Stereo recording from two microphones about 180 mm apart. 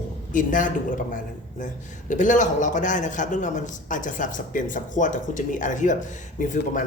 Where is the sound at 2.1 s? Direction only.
45° left (ahead or behind).